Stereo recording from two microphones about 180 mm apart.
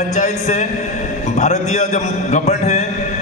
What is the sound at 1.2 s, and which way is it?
Music, 40° left (ahead or behind).